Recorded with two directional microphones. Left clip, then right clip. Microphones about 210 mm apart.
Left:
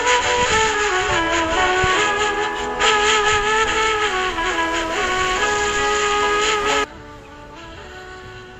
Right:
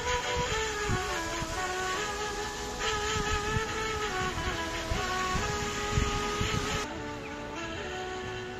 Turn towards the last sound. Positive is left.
turn(degrees=45)  # may be behind; listen again after turning